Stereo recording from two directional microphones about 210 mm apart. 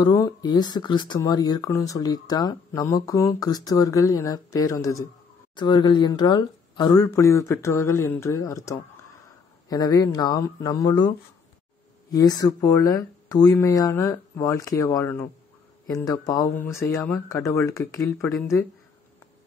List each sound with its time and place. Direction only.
0.0 s speech: 20° left (ahead or behind)